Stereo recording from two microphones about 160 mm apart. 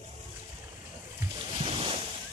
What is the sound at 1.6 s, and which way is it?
Boat, 35° right (ahead or behind).